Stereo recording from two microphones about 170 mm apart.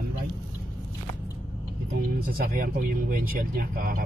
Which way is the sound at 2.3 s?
55° right (ahead or behind).